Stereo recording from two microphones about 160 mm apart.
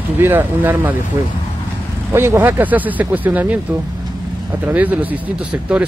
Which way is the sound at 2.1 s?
15° right (ahead or behind).